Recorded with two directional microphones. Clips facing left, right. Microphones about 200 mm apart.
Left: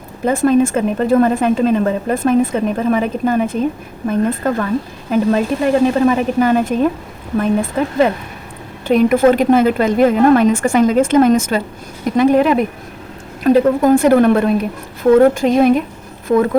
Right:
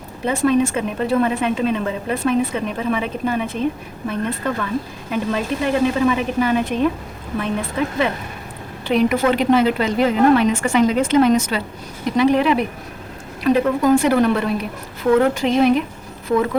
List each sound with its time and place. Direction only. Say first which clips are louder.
0.3 s a woman's voice: left 4 dB; 50° left (ahead or behind)